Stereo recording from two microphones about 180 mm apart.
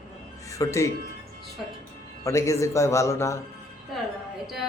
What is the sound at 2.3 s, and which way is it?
A man's voice, 15° left (ahead or behind).